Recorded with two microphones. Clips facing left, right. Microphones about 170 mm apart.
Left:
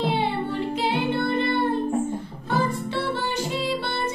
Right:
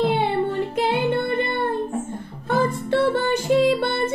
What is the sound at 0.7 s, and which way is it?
Music, 50° right (ahead or behind).